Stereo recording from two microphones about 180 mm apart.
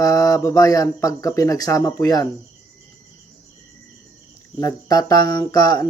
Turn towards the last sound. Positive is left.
turn(degrees=20)  # may be behind; listen again after turning